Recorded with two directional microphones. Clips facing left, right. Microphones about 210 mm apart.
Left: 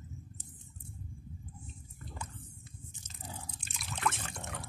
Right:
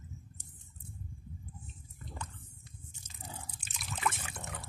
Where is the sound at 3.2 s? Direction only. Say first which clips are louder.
Left 1 dB; 5° right (ahead or behind).